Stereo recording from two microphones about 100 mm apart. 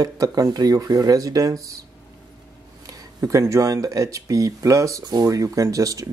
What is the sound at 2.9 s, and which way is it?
Speech, 35° right (ahead or behind).